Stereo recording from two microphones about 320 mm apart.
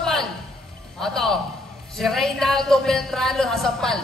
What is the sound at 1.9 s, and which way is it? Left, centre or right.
Speech, centre.